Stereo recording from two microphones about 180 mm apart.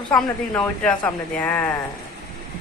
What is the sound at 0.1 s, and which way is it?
Speech, 5° left (ahead or behind).